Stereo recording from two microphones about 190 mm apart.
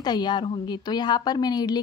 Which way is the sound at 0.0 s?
20° left (ahead or behind).